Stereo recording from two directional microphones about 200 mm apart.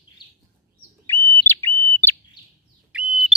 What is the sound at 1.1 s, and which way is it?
Bird, 10° left (ahead or behind).